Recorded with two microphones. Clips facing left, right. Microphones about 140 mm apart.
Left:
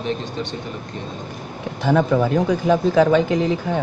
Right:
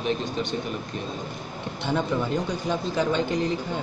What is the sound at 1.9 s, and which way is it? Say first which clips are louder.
Speech: left 8 dB; 90° left.